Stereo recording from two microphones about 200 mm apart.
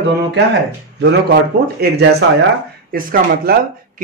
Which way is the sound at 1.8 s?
55° right (ahead or behind).